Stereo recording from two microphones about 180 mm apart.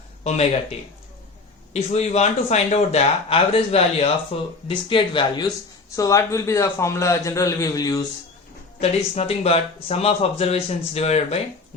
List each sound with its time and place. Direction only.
1.7 s a man's voice: 35° left (ahead or behind); by 8.0 s 20° left (ahead or behind)
8.8 s speech: 35° left (ahead or behind)